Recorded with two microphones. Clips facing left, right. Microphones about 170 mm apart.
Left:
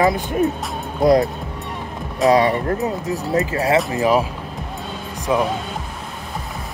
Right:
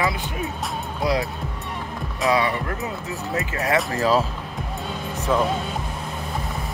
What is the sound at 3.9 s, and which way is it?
Speech, 15° left (ahead or behind).